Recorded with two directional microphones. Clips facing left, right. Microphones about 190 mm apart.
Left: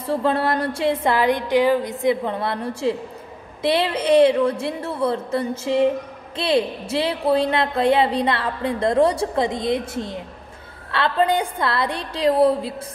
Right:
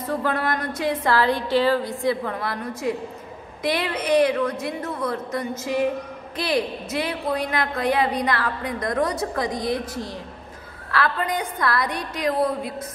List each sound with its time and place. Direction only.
0.0 s a woman's voice: 30° left (ahead or behind)